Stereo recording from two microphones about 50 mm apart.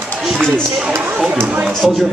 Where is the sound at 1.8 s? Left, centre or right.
Centre.